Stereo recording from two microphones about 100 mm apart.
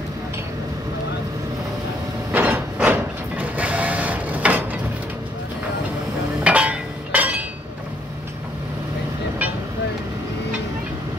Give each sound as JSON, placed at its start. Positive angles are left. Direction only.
{"t": 2.3, "sound": "printer", "side_deg": -15}
{"t": 6.4, "sound": "chink", "side_deg": -10}